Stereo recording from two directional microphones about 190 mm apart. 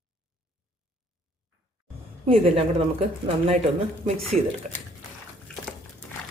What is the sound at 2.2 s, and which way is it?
Speech, 30° right (ahead or behind).